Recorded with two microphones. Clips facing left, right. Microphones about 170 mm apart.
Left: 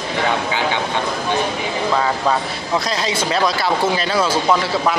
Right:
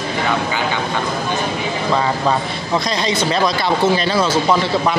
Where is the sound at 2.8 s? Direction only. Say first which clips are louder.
Right 2 dB; 5° left (ahead or behind).